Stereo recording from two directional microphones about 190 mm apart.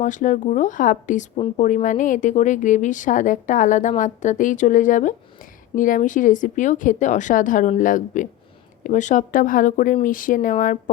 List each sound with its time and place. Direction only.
0.0 s a woman's voice: 40° left (ahead or behind)